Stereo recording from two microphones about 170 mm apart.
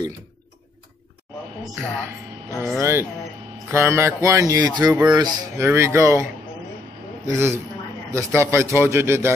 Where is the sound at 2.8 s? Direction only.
15° right (ahead or behind).